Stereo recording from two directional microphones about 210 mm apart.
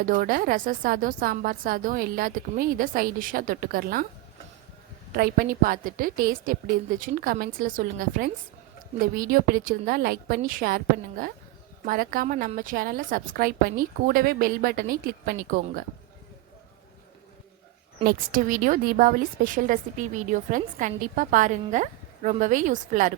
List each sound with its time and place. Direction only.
0.0 s a woman's voice: 40° right (ahead or behind)
5.1 s a woman's voice: 45° right (ahead or behind)
18.0 s a woman's voice: 40° right (ahead or behind)